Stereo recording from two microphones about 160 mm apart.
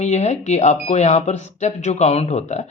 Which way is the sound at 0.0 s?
45° left (ahead or behind).